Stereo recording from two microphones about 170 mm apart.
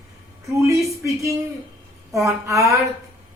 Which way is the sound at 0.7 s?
20° right (ahead or behind).